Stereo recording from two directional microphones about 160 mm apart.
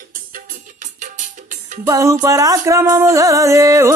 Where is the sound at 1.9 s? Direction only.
20° right (ahead or behind).